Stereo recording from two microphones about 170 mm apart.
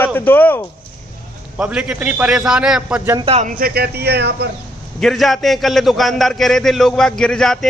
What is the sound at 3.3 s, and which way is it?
Speech, 40° right (ahead or behind).